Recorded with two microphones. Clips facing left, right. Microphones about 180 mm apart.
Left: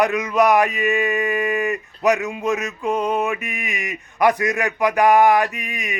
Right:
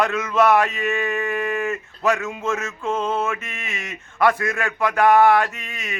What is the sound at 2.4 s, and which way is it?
Mantra, 15° left (ahead or behind).